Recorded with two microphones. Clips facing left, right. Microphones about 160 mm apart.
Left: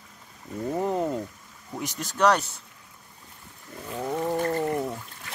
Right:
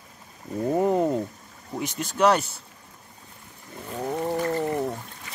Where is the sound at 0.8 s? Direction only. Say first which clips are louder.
Right 4 dB; 10° right (ahead or behind).